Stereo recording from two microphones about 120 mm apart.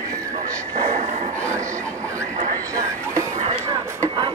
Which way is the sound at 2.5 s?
25° right (ahead or behind).